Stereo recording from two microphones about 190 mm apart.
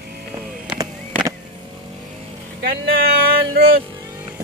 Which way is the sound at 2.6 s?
50° right (ahead or behind).